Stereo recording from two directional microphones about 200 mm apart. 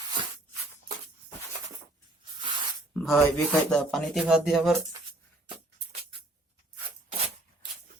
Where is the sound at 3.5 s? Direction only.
Centre (ahead or behind).